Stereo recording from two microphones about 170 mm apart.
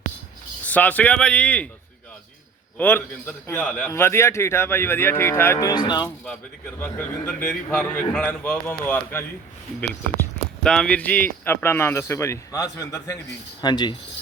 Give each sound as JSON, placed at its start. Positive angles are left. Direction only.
{"t": 0.7, "sound": "speech", "side_deg": 10}
{"t": 2.7, "sound": "speech", "side_deg": 10}
{"t": 6.7, "sound": "speech", "side_deg": 10}